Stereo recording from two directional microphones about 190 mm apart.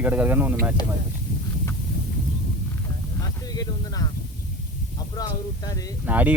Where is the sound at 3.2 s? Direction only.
20° left (ahead or behind).